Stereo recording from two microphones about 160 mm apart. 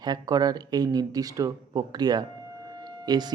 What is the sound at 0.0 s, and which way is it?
Speech, 25° right (ahead or behind).